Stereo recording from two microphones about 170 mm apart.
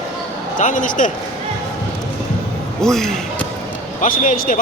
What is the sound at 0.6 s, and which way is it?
Speech, 50° left (ahead or behind).